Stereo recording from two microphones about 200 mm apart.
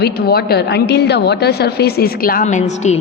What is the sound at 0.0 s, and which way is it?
A woman's voice, 50° left (ahead or behind).